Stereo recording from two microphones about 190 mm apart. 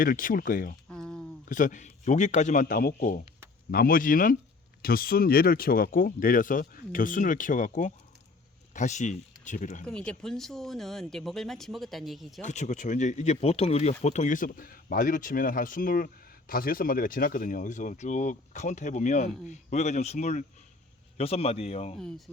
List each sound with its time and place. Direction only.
0.0 s speech: 45° left (ahead or behind)
0.9 s a sound: 5° left (ahead or behind)
1.5 s a man's voice: 40° left (ahead or behind)
9.8 s speech: 5° left (ahead or behind)
12.4 s a man's voice: 40° left (ahead or behind)